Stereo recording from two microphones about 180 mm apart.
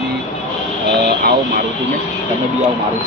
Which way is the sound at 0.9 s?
65° right (ahead or behind).